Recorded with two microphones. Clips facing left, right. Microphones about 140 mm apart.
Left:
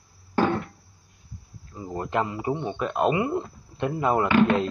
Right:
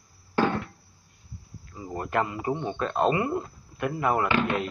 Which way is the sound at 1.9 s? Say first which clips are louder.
Left 1 dB; 20° left (ahead or behind).